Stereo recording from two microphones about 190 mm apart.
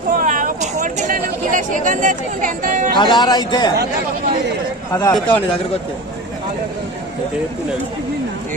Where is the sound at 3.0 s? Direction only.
20° left (ahead or behind).